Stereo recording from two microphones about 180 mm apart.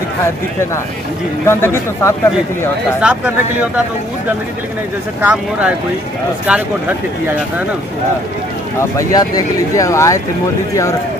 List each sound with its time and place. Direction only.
1.4 s speech: 15° left (ahead or behind)
3.0 s speech: 5° right (ahead or behind)
5.2 s speech: 5° right (ahead or behind)
8.9 s speech: 20° left (ahead or behind)